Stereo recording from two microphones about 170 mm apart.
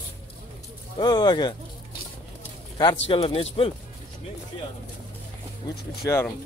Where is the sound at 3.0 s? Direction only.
35° left (ahead or behind).